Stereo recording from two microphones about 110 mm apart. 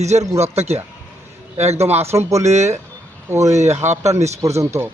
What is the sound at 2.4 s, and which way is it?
Speech, 90° right.